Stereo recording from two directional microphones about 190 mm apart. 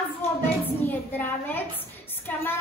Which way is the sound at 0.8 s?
10° left (ahead or behind).